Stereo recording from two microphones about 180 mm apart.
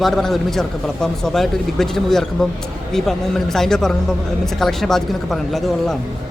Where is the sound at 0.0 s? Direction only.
Centre (ahead or behind).